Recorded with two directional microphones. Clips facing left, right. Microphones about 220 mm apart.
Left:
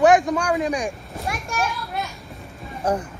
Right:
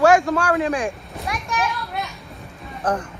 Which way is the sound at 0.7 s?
Centre (ahead or behind).